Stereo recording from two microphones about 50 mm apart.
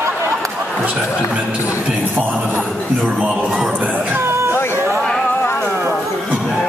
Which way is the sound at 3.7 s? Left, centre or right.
Right.